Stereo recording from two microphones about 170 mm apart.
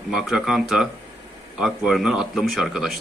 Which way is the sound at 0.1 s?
Centre (ahead or behind).